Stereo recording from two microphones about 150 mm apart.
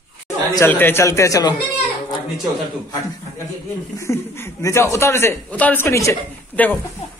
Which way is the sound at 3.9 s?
20° left (ahead or behind).